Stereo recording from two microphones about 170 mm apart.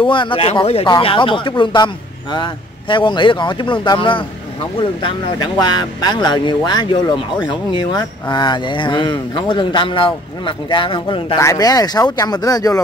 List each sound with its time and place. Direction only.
0.0 s speech: 30° left (ahead or behind)
11.3 s speech: 20° left (ahead or behind)